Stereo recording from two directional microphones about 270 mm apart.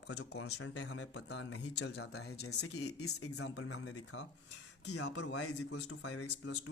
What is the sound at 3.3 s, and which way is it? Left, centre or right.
Speech, left.